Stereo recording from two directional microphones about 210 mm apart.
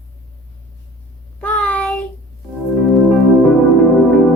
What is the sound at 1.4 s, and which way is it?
Child singing, 5° left (ahead or behind).